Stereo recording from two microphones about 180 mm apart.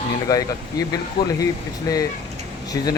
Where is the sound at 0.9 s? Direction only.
20° left (ahead or behind).